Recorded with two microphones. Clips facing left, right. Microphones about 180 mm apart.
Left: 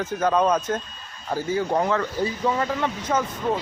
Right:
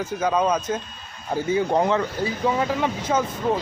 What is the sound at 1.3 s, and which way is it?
Speech, 20° right (ahead or behind).